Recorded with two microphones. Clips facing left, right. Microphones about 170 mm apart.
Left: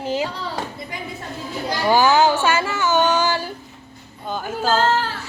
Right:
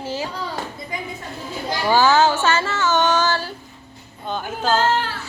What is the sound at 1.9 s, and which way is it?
A woman's voice, 15° left (ahead or behind).